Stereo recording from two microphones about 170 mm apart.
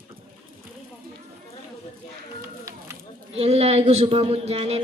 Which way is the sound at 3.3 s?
40° right (ahead or behind).